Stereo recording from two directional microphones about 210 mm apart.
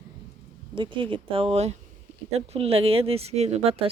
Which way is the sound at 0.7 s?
25° right (ahead or behind).